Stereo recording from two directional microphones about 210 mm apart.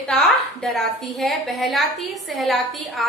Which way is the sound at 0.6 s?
Centre (ahead or behind).